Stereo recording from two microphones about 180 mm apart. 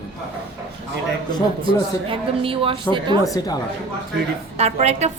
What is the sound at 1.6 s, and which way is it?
A man's voice, 30° right (ahead or behind).